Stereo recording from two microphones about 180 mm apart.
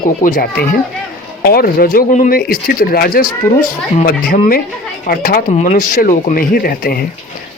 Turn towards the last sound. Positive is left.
turn(degrees=55)  # may be behind; listen again after turning